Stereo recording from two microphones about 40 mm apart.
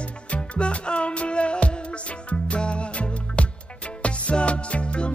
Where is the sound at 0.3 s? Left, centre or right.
Left.